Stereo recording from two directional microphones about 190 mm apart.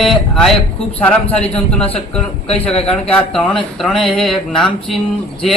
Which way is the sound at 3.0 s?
5° left (ahead or behind).